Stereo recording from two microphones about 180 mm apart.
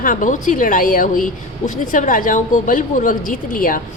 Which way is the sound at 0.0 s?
45° left (ahead or behind).